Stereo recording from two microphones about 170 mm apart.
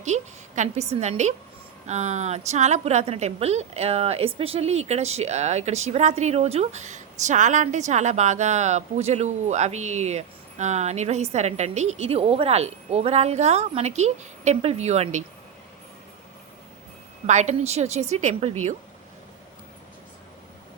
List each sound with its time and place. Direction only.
0.0 s a woman's voice: 45° right (ahead or behind)
17.2 s speech: 45° right (ahead or behind)